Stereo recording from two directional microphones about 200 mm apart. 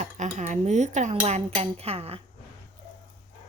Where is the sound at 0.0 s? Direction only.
35° right (ahead or behind).